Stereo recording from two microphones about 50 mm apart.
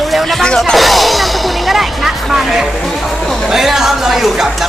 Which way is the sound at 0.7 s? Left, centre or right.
Centre.